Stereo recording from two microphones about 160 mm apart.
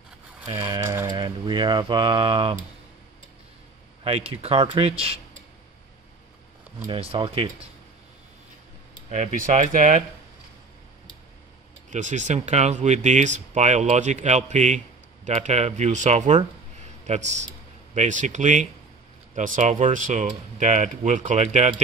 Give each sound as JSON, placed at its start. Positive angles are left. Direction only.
{"t": 0.5, "sound": "speech", "side_deg": -35}
{"t": 0.8, "sound": "a sound", "side_deg": -20}
{"t": 4.0, "sound": "speech", "side_deg": -35}
{"t": 6.9, "sound": "speech", "side_deg": -35}
{"t": 9.1, "sound": "speech", "side_deg": -50}
{"t": 11.9, "sound": "a man's voice", "side_deg": -50}